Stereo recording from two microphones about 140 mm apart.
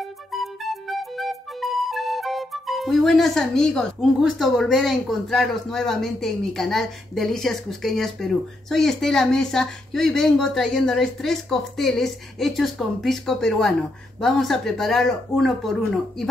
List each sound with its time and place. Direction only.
0.3 s music: centre (ahead or behind)